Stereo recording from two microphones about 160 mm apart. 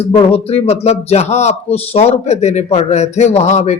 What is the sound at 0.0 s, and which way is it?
Speech, 35° left (ahead or behind).